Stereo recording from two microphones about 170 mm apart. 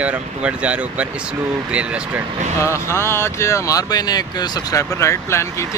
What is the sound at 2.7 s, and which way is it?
Speech, 15° left (ahead or behind).